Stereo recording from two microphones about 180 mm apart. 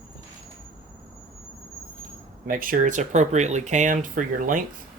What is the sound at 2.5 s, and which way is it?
Speech, 50° right (ahead or behind).